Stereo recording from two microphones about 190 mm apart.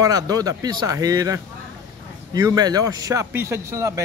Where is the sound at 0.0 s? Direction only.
20° right (ahead or behind).